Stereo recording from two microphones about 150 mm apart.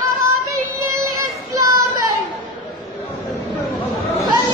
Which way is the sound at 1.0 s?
20° right (ahead or behind).